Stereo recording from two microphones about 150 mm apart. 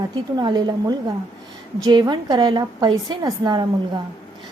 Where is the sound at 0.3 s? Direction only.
30° right (ahead or behind).